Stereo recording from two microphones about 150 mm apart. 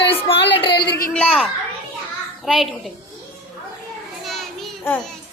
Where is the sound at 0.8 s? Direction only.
90° left.